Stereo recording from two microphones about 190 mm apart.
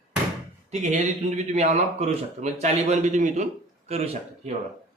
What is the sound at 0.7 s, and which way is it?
Speech, 40° right (ahead or behind).